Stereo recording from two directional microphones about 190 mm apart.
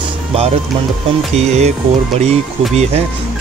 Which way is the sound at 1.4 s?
35° right (ahead or behind).